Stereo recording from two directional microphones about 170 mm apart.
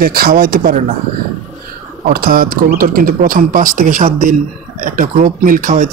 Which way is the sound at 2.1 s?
60° right (ahead or behind).